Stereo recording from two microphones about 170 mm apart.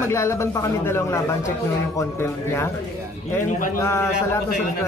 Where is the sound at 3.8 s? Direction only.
15° left (ahead or behind).